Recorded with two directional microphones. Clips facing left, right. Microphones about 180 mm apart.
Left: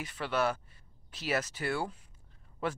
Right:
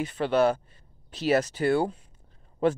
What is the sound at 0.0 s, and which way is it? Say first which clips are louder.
Speech: right 9 dB; 25° right (ahead or behind).